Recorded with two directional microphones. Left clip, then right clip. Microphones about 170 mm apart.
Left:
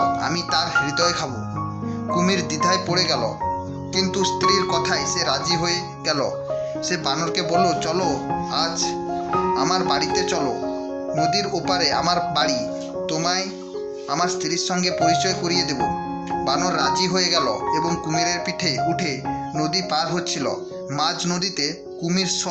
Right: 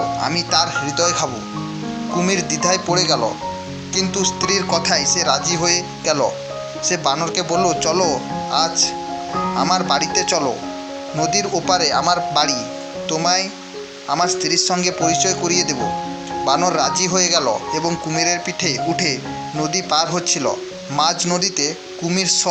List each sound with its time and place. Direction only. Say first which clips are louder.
0.2 s speech: right 4 dB; 25° right (ahead or behind)